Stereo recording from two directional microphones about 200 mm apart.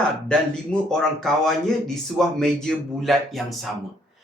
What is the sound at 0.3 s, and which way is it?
Speech, 5° left (ahead or behind).